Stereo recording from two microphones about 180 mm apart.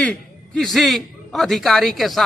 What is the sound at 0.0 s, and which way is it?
A man's voice, 5° left (ahead or behind).